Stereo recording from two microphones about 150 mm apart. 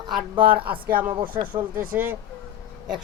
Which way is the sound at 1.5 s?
15° right (ahead or behind).